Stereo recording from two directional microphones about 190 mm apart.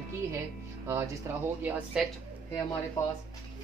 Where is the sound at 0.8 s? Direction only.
10° right (ahead or behind).